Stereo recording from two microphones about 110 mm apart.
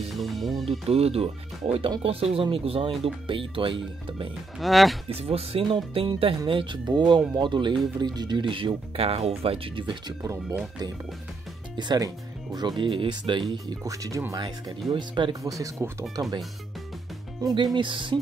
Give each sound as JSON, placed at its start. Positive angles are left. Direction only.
{"t": 0.1, "sound": "speech", "side_deg": 0}
{"t": 0.7, "sound": "speech", "side_deg": -65}
{"t": 4.6, "sound": "speech", "side_deg": 0}
{"t": 5.1, "sound": "speech", "side_deg": -60}
{"t": 11.7, "sound": "speech", "side_deg": -40}
{"t": 13.8, "sound": "speech", "side_deg": -30}
{"t": 14.9, "sound": "speech", "side_deg": -45}
{"t": 15.5, "sound": "speech", "side_deg": -30}
{"t": 17.7, "sound": "speech", "side_deg": -45}